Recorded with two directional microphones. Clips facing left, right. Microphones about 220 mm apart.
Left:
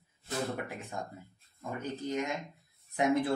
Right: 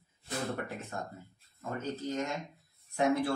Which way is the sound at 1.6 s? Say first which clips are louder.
Right 1 dB; 15° left (ahead or behind).